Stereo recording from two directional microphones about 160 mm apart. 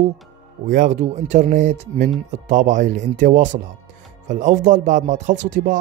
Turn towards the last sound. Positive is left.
turn(degrees=-50)  # may be behind; listen again after turning